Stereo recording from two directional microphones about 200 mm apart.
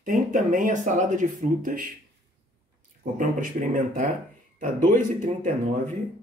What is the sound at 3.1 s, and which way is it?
Speech, 40° right (ahead or behind).